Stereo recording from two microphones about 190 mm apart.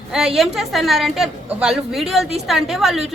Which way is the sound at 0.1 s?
5° right (ahead or behind).